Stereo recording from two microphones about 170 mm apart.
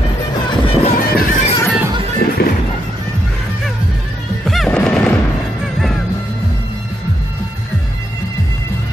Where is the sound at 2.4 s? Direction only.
70° left (ahead or behind).